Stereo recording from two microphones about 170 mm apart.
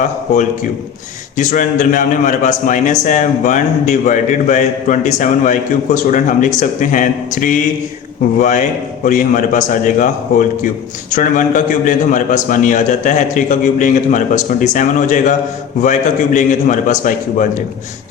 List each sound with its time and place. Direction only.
1.4 s a man's voice: 50° left (ahead or behind)